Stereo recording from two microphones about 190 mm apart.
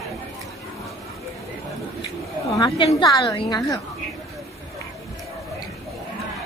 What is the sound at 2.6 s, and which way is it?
A woman's voice, 25° left (ahead or behind).